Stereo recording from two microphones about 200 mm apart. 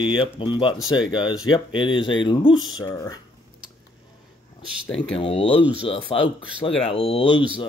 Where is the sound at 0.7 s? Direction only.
5° right (ahead or behind).